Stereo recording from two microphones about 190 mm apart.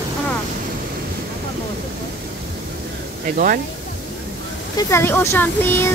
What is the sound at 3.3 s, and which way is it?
Speech, 45° right (ahead or behind).